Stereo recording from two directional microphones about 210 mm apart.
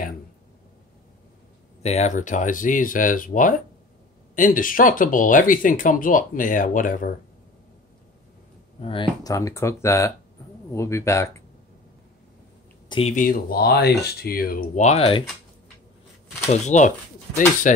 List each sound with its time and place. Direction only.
1.8 s speech: 30° left (ahead or behind)
8.8 s speech: 25° left (ahead or behind)
12.8 s a sound: 25° left (ahead or behind)
13.1 s speech: 40° left (ahead or behind)
16.4 s speech: 35° left (ahead or behind)